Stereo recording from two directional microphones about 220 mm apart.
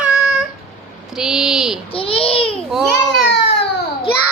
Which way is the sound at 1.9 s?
25° left (ahead or behind).